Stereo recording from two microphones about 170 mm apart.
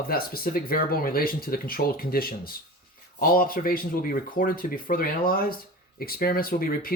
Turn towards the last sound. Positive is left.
turn(degrees=60)  # may be behind; listen again after turning